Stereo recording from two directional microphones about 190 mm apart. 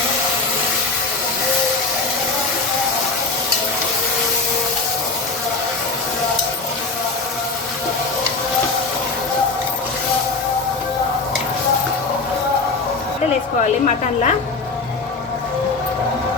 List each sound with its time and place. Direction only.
13.6 s a woman's voice: 40° left (ahead or behind)